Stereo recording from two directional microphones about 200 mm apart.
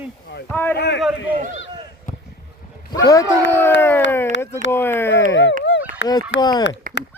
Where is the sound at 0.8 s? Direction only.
55° left (ahead or behind).